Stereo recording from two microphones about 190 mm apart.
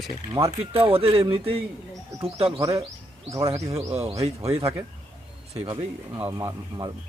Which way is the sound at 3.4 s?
35° right (ahead or behind).